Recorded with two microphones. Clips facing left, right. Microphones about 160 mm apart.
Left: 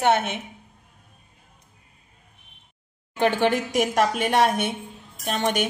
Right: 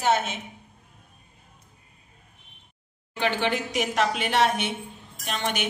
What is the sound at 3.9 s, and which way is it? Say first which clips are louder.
A woman's voice: left 1 dB; 45° left (ahead or behind).